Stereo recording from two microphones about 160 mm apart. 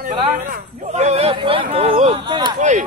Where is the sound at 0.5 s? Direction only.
45° right (ahead or behind); by 2.6 s 30° right (ahead or behind).